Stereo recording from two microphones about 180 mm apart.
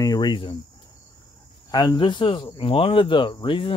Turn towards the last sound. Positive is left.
turn(degrees=30)  # may be behind; listen again after turning